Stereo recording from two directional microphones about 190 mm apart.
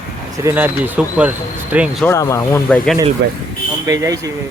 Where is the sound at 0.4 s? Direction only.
10° right (ahead or behind).